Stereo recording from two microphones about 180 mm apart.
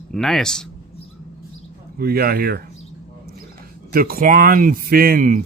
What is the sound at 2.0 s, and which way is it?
Speech, 55° right (ahead or behind).